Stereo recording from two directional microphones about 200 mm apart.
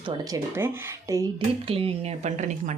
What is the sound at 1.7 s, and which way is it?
Speech, 30° right (ahead or behind).